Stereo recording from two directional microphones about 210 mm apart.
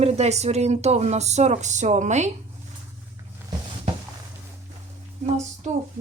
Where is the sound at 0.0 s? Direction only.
30° right (ahead or behind).